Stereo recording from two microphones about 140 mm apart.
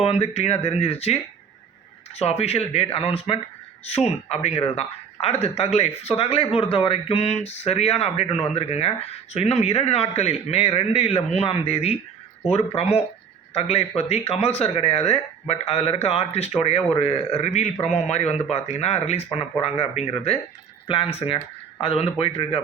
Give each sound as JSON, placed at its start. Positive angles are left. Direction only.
{"t": 0.0, "sound": "speech", "side_deg": 45}